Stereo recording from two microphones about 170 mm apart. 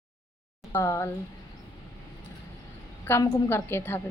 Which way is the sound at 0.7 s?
15° left (ahead or behind).